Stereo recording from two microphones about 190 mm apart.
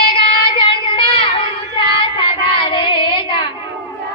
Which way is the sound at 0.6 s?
25° left (ahead or behind).